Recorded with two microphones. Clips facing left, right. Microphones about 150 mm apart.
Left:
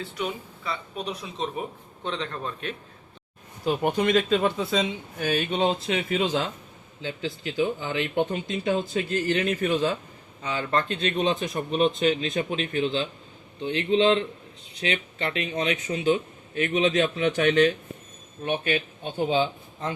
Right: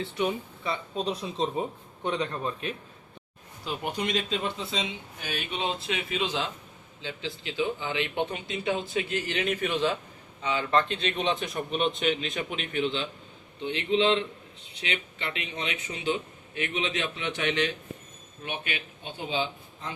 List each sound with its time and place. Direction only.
0.0 s speech: 25° right (ahead or behind)
2.0 s a man's voice: 15° right (ahead or behind)
3.6 s a man's voice: 50° left (ahead or behind)